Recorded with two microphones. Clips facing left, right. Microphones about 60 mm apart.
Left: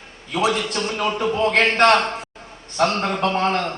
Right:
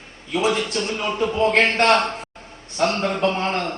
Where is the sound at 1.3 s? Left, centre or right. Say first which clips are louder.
Right 1 dB; left.